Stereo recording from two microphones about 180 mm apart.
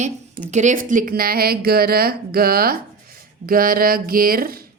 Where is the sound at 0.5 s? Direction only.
45° right (ahead or behind).